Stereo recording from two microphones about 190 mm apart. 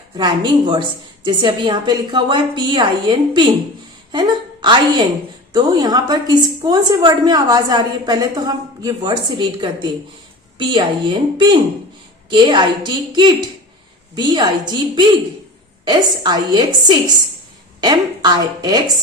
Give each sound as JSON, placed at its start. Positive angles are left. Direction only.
{"t": 0.2, "sound": "a woman's voice", "side_deg": -25}